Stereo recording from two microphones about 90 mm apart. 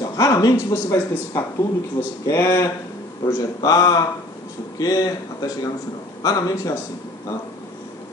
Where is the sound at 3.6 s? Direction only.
45° left (ahead or behind).